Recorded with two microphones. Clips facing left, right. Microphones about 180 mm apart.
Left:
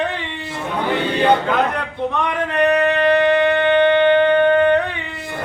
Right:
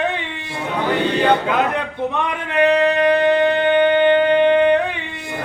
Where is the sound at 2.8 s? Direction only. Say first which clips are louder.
Even; 20° right (ahead or behind).